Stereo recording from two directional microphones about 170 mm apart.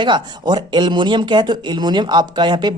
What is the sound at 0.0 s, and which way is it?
Speech, 25° right (ahead or behind).